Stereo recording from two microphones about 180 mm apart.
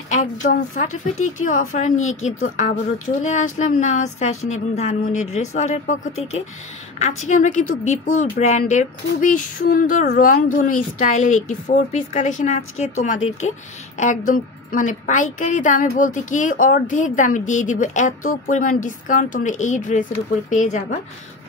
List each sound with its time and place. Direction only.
0.1 s a woman's voice: 45° left (ahead or behind)
7.0 s a woman's voice: 40° left (ahead or behind)